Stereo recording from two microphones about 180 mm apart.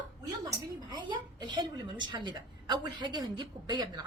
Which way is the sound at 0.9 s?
25° right (ahead or behind).